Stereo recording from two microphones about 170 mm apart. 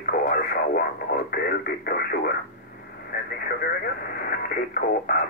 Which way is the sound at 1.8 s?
65° left (ahead or behind).